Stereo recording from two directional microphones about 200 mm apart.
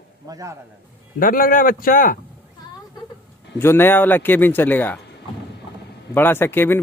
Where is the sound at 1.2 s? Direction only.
45° left (ahead or behind).